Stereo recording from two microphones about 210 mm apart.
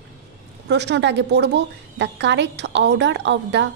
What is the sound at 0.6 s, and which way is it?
A woman's voice, 55° right (ahead or behind).